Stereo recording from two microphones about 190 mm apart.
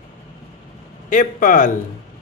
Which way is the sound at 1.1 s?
45° left (ahead or behind).